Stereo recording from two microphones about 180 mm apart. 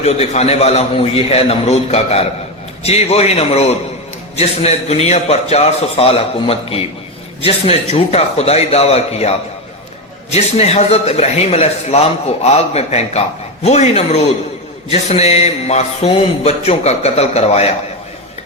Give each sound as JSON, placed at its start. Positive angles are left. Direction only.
{"t": 0.0, "sound": "speech", "side_deg": 35}
{"t": 10.3, "sound": "speech", "side_deg": 35}